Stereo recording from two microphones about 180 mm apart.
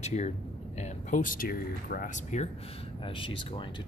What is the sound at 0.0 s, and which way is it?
Speech, 40° left (ahead or behind).